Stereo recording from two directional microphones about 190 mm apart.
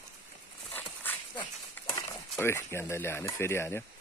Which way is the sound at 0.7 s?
10° left (ahead or behind).